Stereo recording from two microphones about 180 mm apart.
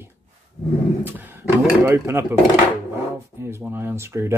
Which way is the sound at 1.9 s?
15° right (ahead or behind).